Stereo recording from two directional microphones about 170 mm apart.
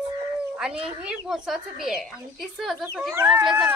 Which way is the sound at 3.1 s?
10° right (ahead or behind).